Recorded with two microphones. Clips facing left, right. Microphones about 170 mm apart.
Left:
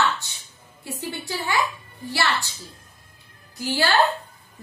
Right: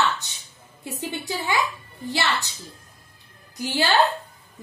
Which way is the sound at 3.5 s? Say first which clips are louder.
Even; 20° right (ahead or behind).